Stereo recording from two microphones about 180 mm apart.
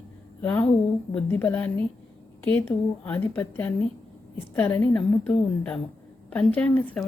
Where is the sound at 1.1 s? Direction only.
10° left (ahead or behind).